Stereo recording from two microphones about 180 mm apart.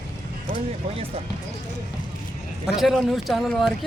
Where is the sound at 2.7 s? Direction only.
Centre (ahead or behind).